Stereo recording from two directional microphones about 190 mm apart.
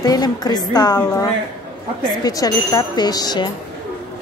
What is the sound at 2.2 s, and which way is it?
A woman's voice, 20° left (ahead or behind).